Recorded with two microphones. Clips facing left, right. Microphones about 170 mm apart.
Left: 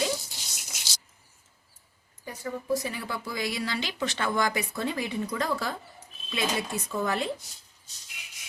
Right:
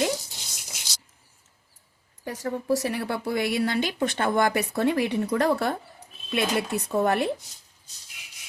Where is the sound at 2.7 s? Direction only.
70° right (ahead or behind).